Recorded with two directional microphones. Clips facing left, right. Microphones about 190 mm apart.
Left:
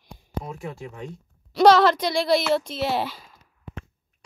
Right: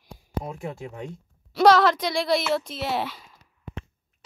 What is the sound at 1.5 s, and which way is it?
Speech, centre (ahead or behind).